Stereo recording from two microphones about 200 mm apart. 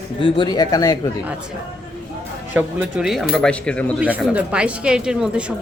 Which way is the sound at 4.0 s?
5° right (ahead or behind).